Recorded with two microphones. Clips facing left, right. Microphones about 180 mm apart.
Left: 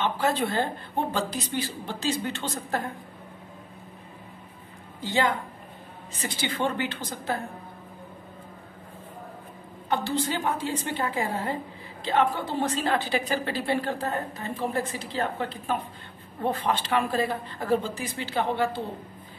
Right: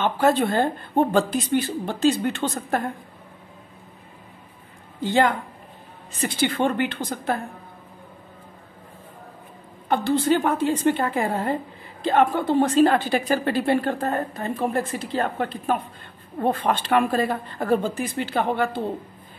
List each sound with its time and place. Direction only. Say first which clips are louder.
0.2 s a woman's voice: right 9 dB; 50° right (ahead or behind)
5.0 s a woman's voice: right 5 dB; 55° right (ahead or behind)
9.8 s a woman's voice: right 7 dB; 55° right (ahead or behind)